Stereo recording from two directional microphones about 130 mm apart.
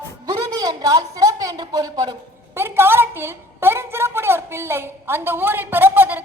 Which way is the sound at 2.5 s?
20° right (ahead or behind).